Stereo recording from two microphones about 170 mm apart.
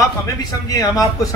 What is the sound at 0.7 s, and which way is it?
Speech, 20° left (ahead or behind).